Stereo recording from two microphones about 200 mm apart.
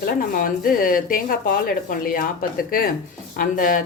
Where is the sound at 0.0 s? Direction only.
45° left (ahead or behind).